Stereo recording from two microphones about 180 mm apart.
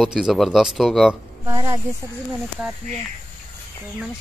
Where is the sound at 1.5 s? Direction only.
15° right (ahead or behind).